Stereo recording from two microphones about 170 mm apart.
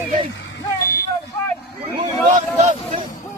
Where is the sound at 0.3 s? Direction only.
90° left.